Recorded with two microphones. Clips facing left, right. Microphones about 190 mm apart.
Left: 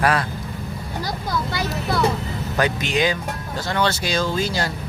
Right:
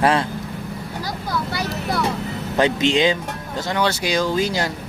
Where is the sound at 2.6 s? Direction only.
25° right (ahead or behind).